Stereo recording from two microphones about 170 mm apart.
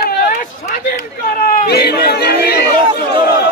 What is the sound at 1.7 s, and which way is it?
Speech, 70° left (ahead or behind).